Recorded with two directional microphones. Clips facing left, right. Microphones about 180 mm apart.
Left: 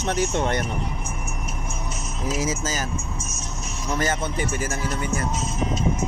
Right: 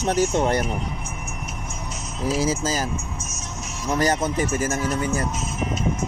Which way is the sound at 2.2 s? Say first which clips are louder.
Right 4 dB; 30° right (ahead or behind).